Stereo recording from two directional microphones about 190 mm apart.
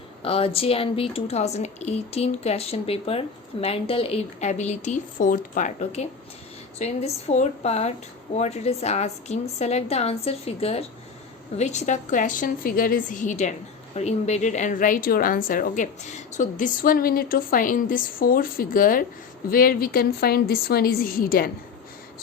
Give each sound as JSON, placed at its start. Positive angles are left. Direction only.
{"t": 0.2, "sound": "a woman's voice", "side_deg": 30}